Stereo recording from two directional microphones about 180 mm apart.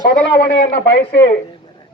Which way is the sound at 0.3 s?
65° left (ahead or behind).